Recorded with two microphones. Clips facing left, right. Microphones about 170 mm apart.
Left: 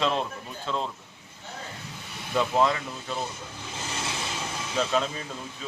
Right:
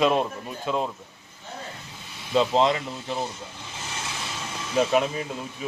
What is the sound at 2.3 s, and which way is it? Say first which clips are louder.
Speech: right 3 dB; 25° right (ahead or behind).